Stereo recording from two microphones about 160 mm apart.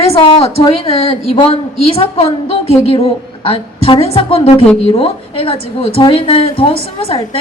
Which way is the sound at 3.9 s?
35° left (ahead or behind).